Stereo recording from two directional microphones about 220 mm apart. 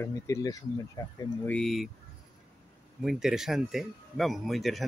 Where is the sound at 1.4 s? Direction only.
5° left (ahead or behind).